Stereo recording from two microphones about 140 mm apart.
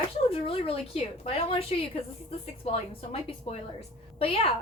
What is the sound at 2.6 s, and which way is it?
Speech, 45° left (ahead or behind).